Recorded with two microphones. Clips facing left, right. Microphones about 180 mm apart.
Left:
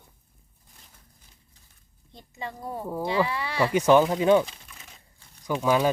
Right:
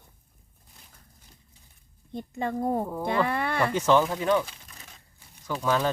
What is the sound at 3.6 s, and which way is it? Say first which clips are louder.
Speech: left 4 dB; 15° left (ahead or behind).